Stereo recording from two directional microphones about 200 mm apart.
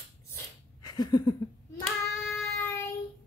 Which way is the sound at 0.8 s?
20° left (ahead or behind).